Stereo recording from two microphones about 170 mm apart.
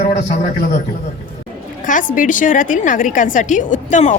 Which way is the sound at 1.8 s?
50° left (ahead or behind).